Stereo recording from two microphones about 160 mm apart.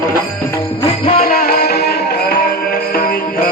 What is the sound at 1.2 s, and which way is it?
Music, 65° left (ahead or behind).